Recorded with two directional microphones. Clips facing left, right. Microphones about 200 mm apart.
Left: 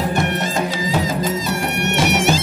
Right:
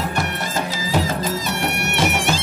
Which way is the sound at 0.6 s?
20° left (ahead or behind).